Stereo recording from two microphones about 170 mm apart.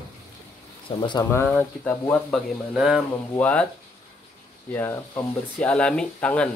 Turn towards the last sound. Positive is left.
turn(degrees=5)  # may be behind; listen again after turning